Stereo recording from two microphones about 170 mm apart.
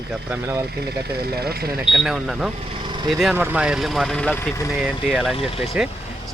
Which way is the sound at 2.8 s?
25° right (ahead or behind).